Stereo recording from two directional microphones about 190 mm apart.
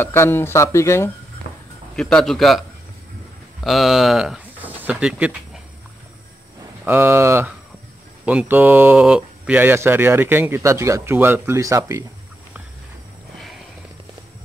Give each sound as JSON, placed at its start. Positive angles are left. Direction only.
{"t": 0.0, "sound": "speech", "side_deg": 10}
{"t": 1.5, "sound": "a sound", "side_deg": 55}
{"t": 2.0, "sound": "a man's voice", "side_deg": 5}
{"t": 3.6, "sound": "speech", "side_deg": 0}
{"t": 6.8, "sound": "speech", "side_deg": -10}